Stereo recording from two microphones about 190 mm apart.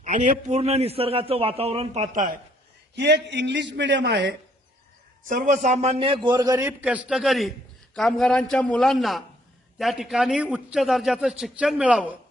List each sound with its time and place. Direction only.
0.0 s a man's voice: 40° right (ahead or behind)
2.9 s a man's voice: 65° right (ahead or behind)
5.3 s a man's voice: 40° right (ahead or behind); by 6.7 s 15° right (ahead or behind)
6.8 s a man's voice: 5° right (ahead or behind)